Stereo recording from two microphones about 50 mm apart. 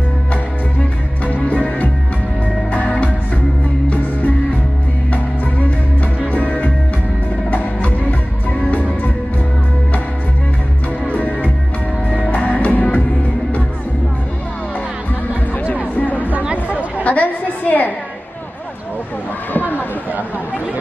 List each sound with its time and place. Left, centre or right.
0.3 s music: left
5.1 s music: left
11.1 s music: left
15.5 s a sound: left
17.1 s chatter: left
17.6 s a sound: left